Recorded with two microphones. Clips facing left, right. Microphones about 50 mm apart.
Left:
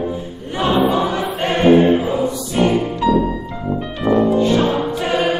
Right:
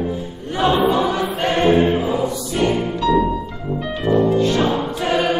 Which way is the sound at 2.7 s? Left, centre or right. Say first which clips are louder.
Left 1 dB; left.